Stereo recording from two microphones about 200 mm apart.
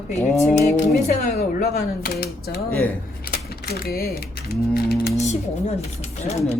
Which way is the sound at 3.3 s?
50° left (ahead or behind).